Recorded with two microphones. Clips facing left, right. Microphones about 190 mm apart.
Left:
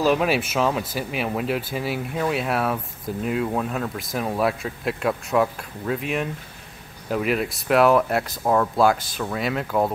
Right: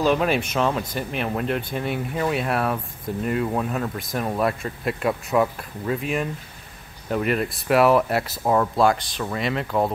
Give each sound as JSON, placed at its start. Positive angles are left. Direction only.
{"t": 0.0, "sound": "speech", "side_deg": 5}